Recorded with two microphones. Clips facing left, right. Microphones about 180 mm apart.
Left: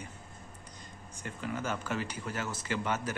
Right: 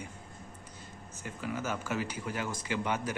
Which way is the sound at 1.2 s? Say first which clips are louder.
Even; 5° right (ahead or behind).